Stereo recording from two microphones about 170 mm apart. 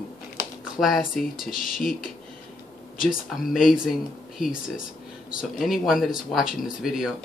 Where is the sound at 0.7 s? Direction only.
Centre (ahead or behind).